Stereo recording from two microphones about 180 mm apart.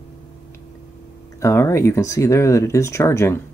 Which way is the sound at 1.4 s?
15° left (ahead or behind).